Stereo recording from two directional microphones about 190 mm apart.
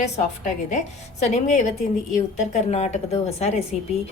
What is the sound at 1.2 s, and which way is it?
A woman's voice, 40° left (ahead or behind).